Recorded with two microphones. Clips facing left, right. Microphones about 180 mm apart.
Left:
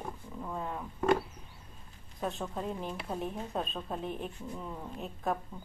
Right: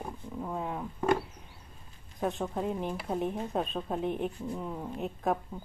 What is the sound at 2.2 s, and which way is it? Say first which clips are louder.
Speech: right 4 dB; 15° right (ahead or behind).